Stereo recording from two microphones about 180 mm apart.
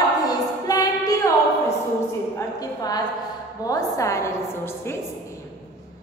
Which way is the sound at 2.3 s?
20° left (ahead or behind).